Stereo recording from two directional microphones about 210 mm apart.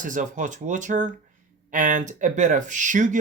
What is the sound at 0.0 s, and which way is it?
Speech, 40° right (ahead or behind).